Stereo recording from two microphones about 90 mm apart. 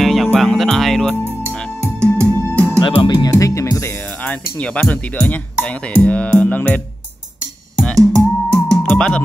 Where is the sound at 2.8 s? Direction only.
75° left (ahead or behind).